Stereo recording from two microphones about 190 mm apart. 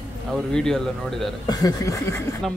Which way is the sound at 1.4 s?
20° left (ahead or behind).